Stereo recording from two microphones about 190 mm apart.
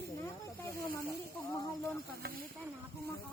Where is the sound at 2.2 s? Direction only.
55° right (ahead or behind).